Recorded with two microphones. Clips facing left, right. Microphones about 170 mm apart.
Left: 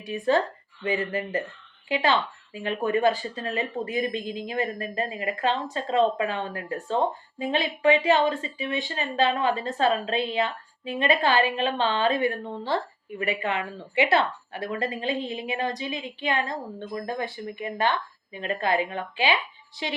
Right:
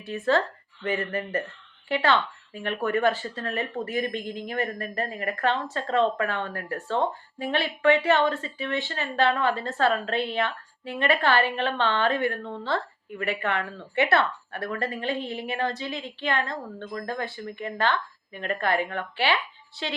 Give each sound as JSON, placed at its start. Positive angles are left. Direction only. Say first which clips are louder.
{"t": 0.0, "sound": "speech", "louder": "left 1 dB", "side_deg": 15}